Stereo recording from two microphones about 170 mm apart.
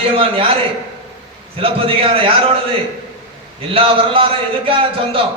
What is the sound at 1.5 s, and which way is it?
Speech, 35° right (ahead or behind).